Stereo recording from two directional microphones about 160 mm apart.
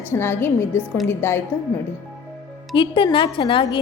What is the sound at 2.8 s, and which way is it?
A woman's voice, 30° left (ahead or behind).